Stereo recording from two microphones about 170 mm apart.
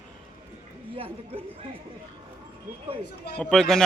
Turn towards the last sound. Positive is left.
turn(degrees=5)  # may be behind; listen again after turning